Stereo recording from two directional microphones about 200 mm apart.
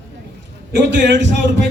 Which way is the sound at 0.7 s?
65° right (ahead or behind).